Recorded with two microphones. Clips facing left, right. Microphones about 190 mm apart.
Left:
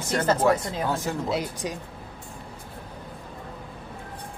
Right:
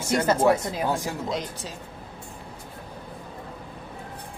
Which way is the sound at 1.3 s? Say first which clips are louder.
Left 3 dB; 10° left (ahead or behind).